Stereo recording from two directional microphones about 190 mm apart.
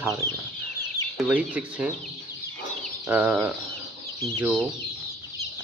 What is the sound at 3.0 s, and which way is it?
Speech, 10° right (ahead or behind).